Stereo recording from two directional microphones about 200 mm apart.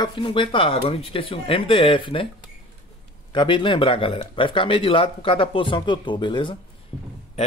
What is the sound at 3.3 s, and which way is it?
Speech, 25° left (ahead or behind).